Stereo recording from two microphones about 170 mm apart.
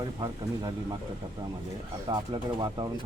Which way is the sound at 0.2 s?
25° right (ahead or behind).